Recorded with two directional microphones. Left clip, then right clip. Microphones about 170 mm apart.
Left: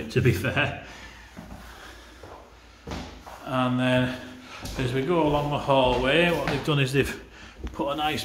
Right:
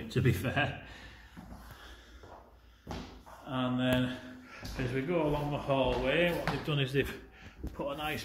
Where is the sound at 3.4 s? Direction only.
10° left (ahead or behind).